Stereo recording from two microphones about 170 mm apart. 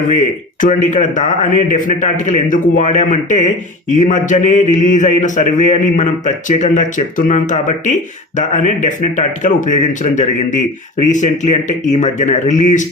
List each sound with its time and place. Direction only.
0.9 s a man's voice: 45° left (ahead or behind)